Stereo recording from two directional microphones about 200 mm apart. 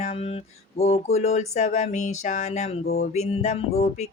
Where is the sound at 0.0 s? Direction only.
30° left (ahead or behind).